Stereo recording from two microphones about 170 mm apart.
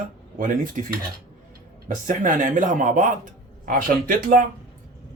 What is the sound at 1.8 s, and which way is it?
A man's voice, 50° right (ahead or behind).